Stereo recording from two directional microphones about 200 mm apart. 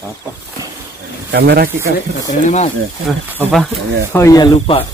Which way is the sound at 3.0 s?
5° right (ahead or behind).